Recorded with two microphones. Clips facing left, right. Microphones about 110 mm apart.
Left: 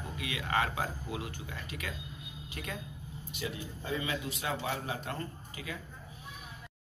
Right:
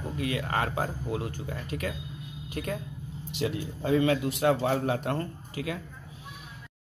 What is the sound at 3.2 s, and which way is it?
A man's voice, 75° right (ahead or behind).